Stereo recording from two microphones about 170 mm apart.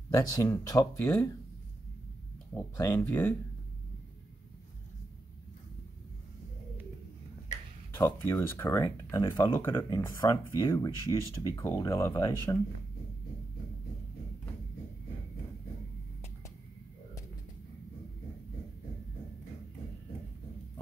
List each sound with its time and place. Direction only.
0.1 s speech: 20° left (ahead or behind)
2.5 s speech: 15° left (ahead or behind)
7.9 s speech: 15° left (ahead or behind)